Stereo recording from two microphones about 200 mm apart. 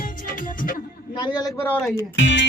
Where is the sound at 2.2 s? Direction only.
60° left (ahead or behind).